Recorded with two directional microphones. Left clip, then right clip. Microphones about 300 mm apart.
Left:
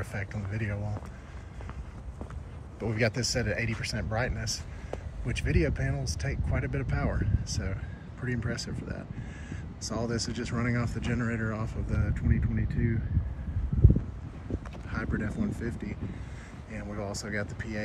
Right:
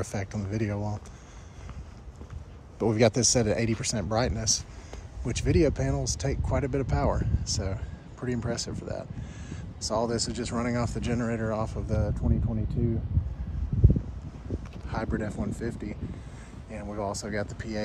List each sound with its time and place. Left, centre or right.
0.0 s speech: right
2.8 s speech: right; by 12.9 s centre
14.9 s speech: centre
16.7 s a sound: centre
17.4 s speech: centre